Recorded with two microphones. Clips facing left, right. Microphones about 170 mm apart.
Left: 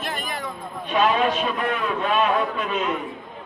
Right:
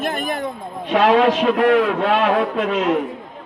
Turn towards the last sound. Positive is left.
turn(degrees=-90)